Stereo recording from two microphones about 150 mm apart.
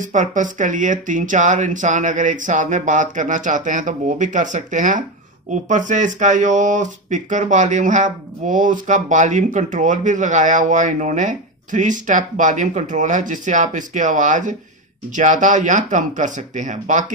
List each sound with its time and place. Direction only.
0.0 s speech: 55° right (ahead or behind)